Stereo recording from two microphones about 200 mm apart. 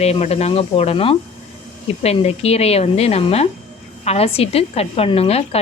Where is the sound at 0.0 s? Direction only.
30° left (ahead or behind).